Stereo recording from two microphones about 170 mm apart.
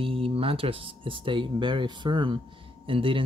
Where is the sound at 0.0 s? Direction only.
35° right (ahead or behind).